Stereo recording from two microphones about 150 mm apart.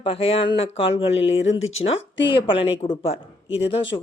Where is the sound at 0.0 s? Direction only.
40° left (ahead or behind).